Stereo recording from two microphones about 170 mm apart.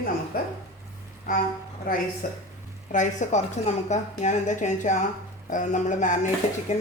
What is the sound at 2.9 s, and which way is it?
Speech, 45° left (ahead or behind).